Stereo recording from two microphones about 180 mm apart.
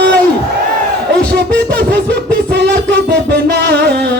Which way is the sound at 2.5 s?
65° right (ahead or behind).